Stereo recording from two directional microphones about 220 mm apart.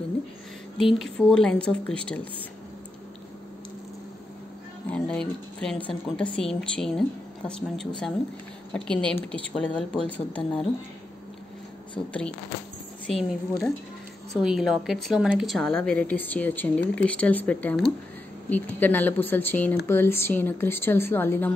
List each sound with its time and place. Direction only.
0.7 s speech: centre (ahead or behind)
4.9 s speech: 5° left (ahead or behind)
5.9 s a woman's voice: 20° left (ahead or behind)
6.4 s speech: centre (ahead or behind)
12.0 s speech: 5° left (ahead or behind)